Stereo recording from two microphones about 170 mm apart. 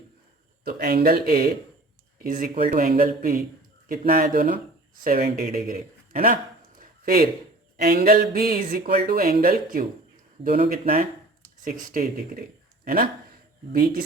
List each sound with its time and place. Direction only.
0.6 s speech: 65° right (ahead or behind)